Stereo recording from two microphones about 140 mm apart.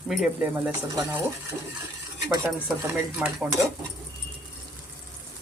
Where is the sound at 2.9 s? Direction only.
10° right (ahead or behind).